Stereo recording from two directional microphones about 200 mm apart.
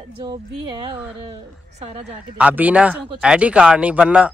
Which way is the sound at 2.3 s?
5° right (ahead or behind).